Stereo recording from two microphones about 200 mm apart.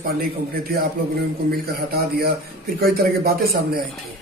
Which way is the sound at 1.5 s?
50° right (ahead or behind).